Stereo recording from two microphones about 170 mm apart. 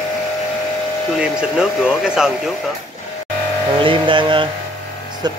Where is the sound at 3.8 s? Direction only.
30° right (ahead or behind).